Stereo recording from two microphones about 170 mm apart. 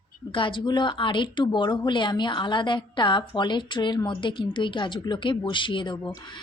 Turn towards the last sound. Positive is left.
turn(degrees=30)  # may be behind; listen again after turning